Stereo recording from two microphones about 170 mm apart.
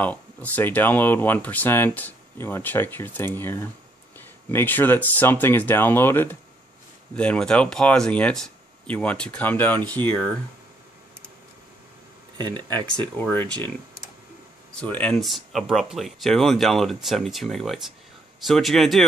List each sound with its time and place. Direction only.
0.0 s speech: 10° left (ahead or behind)
12.4 s speech: 25° right (ahead or behind)
12.7 s speech: 10° left (ahead or behind)
14.8 s speech: 10° left (ahead or behind)